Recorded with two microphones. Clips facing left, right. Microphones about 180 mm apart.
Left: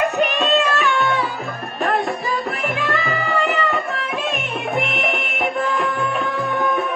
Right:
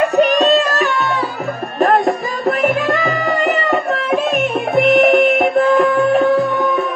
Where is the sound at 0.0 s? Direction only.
35° right (ahead or behind).